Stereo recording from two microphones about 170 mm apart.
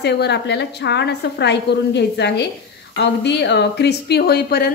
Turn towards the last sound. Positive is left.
turn(degrees=65)  # may be behind; listen again after turning